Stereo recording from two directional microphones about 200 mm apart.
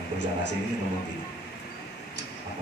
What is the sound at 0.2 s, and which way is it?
Speech, 65° left (ahead or behind).